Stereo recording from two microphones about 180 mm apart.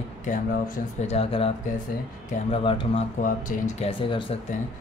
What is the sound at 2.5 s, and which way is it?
Speech, 30° left (ahead or behind).